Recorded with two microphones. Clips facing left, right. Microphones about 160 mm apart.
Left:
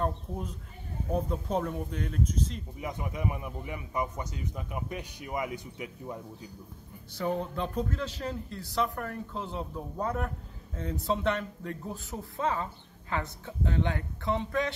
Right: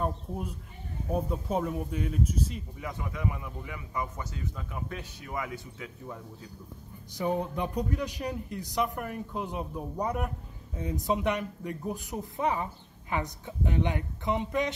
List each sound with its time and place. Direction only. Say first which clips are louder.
0.0 s speech: even; 10° right (ahead or behind)
2.8 s a man's voice: left 1 dB; 20° left (ahead or behind)
7.2 s speech: right 1 dB; 15° right (ahead or behind)